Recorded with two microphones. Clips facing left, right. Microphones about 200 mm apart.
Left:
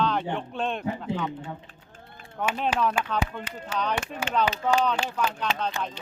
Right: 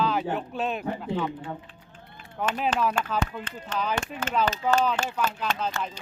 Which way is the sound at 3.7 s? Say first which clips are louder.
Even; 10° left (ahead or behind).